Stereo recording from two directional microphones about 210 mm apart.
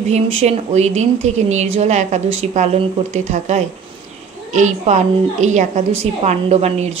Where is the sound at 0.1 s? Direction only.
30° right (ahead or behind).